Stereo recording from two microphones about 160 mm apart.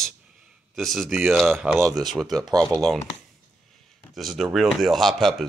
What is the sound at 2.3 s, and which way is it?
Speech, 20° right (ahead or behind).